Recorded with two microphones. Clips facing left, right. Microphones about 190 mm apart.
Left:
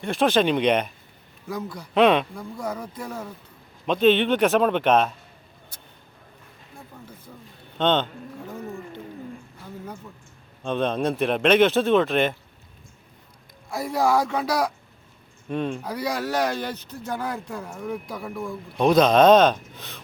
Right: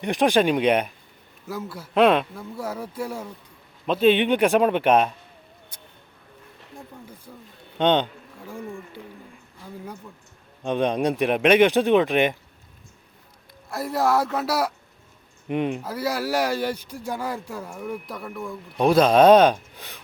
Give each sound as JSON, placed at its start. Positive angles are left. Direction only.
{"t": 0.0, "sound": "speech", "side_deg": -15}
{"t": 7.8, "sound": "a sound", "side_deg": -15}
{"t": 10.6, "sound": "speech", "side_deg": -15}
{"t": 13.7, "sound": "speech", "side_deg": 0}
{"t": 15.4, "sound": "speech", "side_deg": -20}
{"t": 15.8, "sound": "speech", "side_deg": -5}